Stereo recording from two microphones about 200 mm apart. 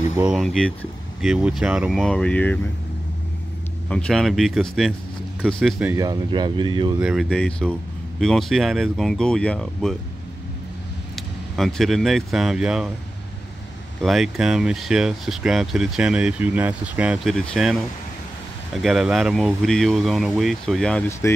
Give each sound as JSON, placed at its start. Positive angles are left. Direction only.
{"t": 0.2, "sound": "speech", "side_deg": 0}
{"t": 3.9, "sound": "speech", "side_deg": 5}
{"t": 5.9, "sound": "speech", "side_deg": -20}
{"t": 7.0, "sound": "speech", "side_deg": 0}
{"t": 11.1, "sound": "speech", "side_deg": 0}
{"t": 14.0, "sound": "speech", "side_deg": 0}
{"t": 18.8, "sound": "speech", "side_deg": 0}